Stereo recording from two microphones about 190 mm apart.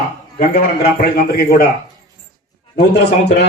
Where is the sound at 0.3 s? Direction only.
55° left (ahead or behind).